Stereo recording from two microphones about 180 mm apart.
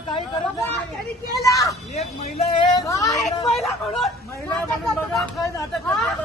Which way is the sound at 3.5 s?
Centre (ahead or behind).